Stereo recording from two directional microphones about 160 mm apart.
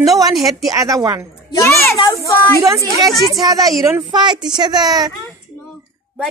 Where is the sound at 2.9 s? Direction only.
20° right (ahead or behind).